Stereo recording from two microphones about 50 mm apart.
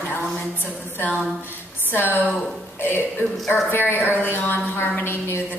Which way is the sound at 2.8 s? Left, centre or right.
Left.